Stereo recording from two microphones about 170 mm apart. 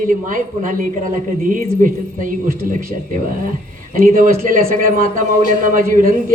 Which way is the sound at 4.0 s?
55° right (ahead or behind).